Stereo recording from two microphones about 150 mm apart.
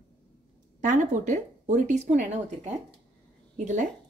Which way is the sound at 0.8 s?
55° right (ahead or behind).